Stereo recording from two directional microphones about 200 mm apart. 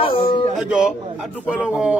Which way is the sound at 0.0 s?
25° left (ahead or behind).